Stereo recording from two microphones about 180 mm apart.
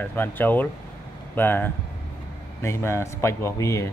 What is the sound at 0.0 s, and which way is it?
Speech, 10° left (ahead or behind).